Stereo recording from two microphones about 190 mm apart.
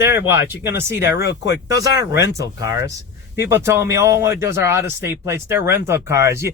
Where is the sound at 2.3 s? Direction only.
15° right (ahead or behind).